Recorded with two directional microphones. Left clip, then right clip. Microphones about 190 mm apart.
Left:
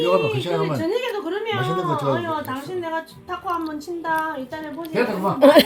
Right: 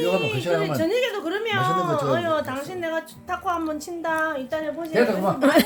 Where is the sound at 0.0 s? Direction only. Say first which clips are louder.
Left 3 dB; 20° right (ahead or behind).